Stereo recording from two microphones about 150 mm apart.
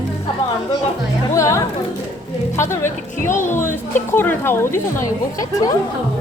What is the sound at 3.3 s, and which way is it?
Speech, 55° left (ahead or behind).